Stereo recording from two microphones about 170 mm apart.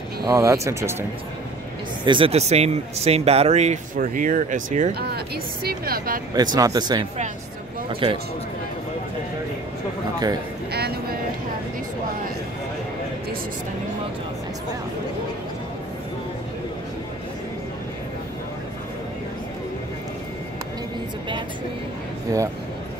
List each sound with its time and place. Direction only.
0.2 s speech: 20° right (ahead or behind)
2.0 s speech: 30° right (ahead or behind); by 4.9 s 45° right (ahead or behind)
4.9 s speech: 70° right (ahead or behind)
6.3 s speech: 25° right (ahead or behind)
10.7 s a sound: 70° right (ahead or behind)
22.3 s speech: 20° right (ahead or behind)